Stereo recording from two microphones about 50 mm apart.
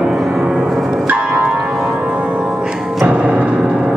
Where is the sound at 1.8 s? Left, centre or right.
Centre.